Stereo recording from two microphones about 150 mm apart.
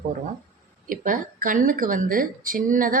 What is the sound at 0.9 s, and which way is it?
Speech, 65° right (ahead or behind).